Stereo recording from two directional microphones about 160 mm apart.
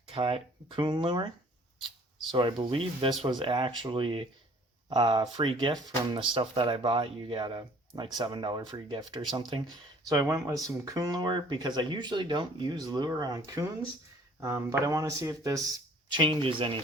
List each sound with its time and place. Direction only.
0.1 s speech: 35° right (ahead or behind)
2.3 s speech: 30° right (ahead or behind)
16.1 s speech: 30° right (ahead or behind)